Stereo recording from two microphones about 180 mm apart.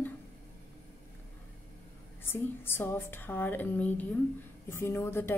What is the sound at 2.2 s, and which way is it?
A woman's voice, 10° left (ahead or behind).